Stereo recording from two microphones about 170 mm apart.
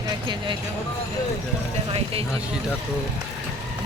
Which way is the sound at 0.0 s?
25° right (ahead or behind).